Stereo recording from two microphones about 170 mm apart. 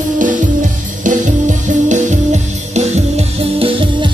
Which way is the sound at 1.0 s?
45° right (ahead or behind).